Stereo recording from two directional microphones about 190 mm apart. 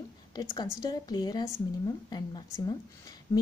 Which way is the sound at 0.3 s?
20° left (ahead or behind).